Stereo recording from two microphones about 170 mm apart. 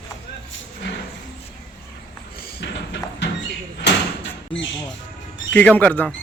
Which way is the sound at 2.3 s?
65° left (ahead or behind).